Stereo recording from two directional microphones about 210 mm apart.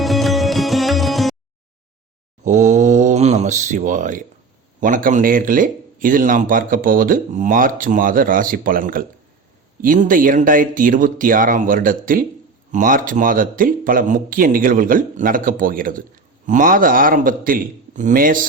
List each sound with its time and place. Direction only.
0.0 s music: centre (ahead or behind)
2.4 s a sound: 35° right (ahead or behind)
4.8 s speech: 40° right (ahead or behind)